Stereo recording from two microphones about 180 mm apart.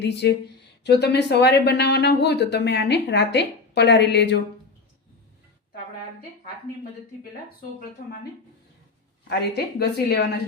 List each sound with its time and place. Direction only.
0.0 s speech: 70° left (ahead or behind)
9.4 s a woman's voice: 65° left (ahead or behind)